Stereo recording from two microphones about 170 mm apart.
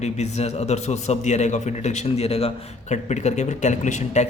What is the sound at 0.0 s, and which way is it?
A man's voice, 40° left (ahead or behind).